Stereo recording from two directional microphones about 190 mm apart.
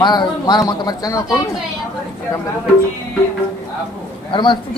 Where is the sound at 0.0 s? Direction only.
25° left (ahead or behind).